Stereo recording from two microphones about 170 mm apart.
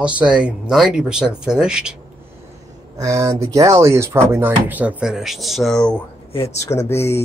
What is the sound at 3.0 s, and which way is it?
Speech, 20° right (ahead or behind).